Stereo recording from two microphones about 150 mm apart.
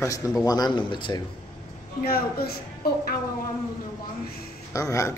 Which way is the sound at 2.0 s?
90° left.